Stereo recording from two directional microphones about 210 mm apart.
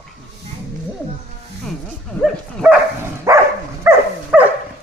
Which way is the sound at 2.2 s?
Centre (ahead or behind).